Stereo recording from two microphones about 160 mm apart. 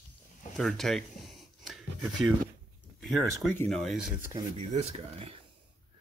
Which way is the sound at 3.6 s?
Centre (ahead or behind).